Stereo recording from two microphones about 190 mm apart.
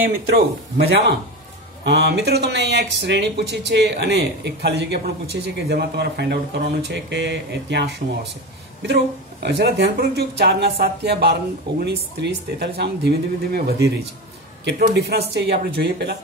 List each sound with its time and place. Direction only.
0.7 s speech: 60° right (ahead or behind)